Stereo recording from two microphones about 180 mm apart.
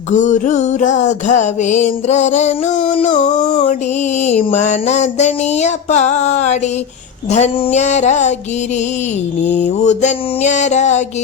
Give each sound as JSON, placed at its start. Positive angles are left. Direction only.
{"t": 0.1, "sound": "music", "side_deg": 45}
{"t": 9.8, "sound": "music", "side_deg": 40}